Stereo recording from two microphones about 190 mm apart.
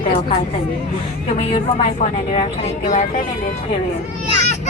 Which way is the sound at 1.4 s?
35° left (ahead or behind).